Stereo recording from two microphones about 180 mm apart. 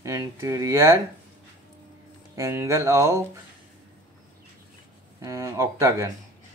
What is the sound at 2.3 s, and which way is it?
Speech, 15° right (ahead or behind).